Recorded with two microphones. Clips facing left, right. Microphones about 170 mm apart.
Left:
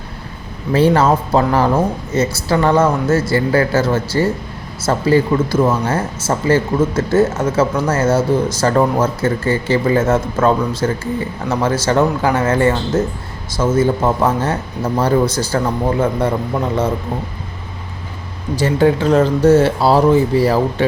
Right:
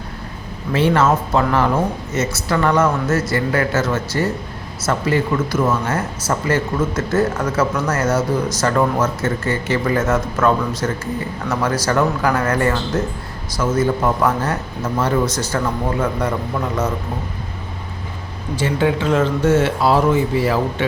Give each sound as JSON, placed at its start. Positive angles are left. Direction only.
{"t": 0.7, "sound": "speech", "side_deg": 35}
{"t": 18.5, "sound": "speech", "side_deg": 40}